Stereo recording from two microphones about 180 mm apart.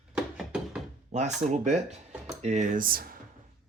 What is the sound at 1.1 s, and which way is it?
Speech, 40° right (ahead or behind).